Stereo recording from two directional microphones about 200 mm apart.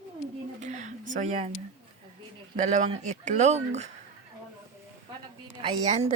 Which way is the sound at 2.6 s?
35° right (ahead or behind).